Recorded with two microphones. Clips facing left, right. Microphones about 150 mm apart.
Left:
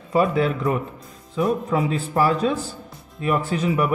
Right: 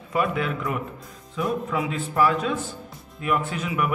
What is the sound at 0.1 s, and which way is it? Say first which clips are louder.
Speech: left 5 dB; 30° left (ahead or behind).